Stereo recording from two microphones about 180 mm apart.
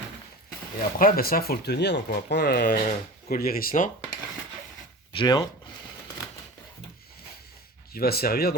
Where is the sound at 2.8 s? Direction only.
55° left (ahead or behind).